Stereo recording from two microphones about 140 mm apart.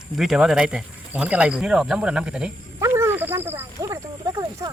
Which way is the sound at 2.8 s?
20° right (ahead or behind).